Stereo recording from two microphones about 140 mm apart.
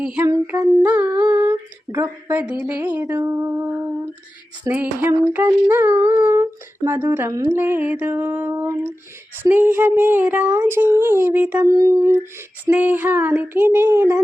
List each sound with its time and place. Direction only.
0.0 s humming: 10° right (ahead or behind)
4.7 s humming: 15° right (ahead or behind)
11.7 s humming: 25° right (ahead or behind)